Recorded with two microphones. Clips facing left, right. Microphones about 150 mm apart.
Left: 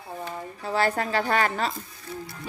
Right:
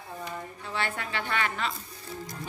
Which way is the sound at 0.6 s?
40° left (ahead or behind).